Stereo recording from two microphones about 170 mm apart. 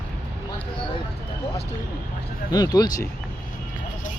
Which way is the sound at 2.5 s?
20° left (ahead or behind).